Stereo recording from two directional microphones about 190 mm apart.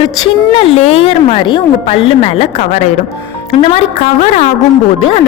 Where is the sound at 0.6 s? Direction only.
35° left (ahead or behind).